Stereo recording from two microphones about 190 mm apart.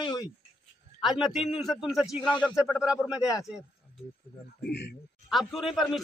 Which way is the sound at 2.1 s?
25° left (ahead or behind).